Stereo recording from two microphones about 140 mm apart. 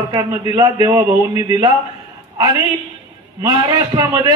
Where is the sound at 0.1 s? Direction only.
30° right (ahead or behind).